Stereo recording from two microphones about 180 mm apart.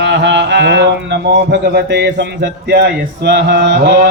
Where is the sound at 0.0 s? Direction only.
75° right (ahead or behind).